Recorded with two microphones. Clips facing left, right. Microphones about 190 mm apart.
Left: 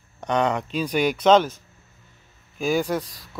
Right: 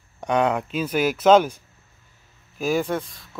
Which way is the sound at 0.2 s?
5° right (ahead or behind).